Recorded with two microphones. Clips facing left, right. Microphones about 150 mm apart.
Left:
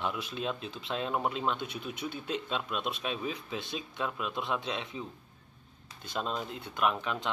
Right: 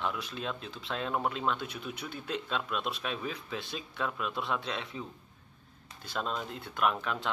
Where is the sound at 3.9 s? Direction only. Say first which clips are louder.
Right 1 dB; 10° left (ahead or behind).